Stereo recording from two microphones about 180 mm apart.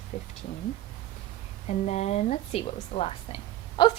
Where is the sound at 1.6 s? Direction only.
40° left (ahead or behind).